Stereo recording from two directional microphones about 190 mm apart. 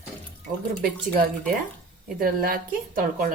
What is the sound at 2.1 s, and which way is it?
A woman's voice, 50° right (ahead or behind).